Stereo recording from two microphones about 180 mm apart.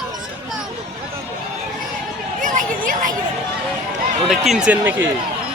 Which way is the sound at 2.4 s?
45° right (ahead or behind).